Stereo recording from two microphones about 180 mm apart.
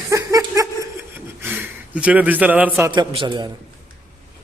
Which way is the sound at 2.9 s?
25° right (ahead or behind).